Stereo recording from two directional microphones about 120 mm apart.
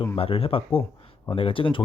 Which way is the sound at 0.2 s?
50° left (ahead or behind).